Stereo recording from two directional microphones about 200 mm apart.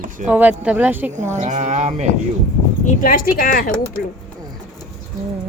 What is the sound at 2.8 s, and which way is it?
Speech, 45° left (ahead or behind).